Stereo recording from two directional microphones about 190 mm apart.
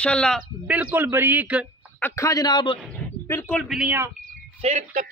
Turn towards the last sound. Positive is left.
turn(degrees=-40)  # may be behind; listen again after turning